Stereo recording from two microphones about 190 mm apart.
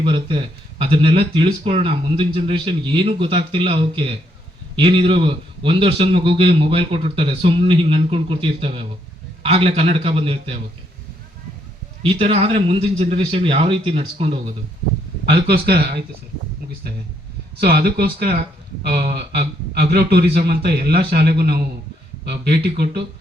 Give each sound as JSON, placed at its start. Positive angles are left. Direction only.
{"t": 0.0, "sound": "a man's voice", "side_deg": -25}
{"t": 12.0, "sound": "a man's voice", "side_deg": -30}
{"t": 15.4, "sound": "speech", "side_deg": -55}
{"t": 17.6, "sound": "speech", "side_deg": -55}